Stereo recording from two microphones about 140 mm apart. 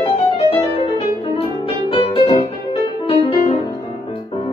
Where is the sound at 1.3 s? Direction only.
40° left (ahead or behind).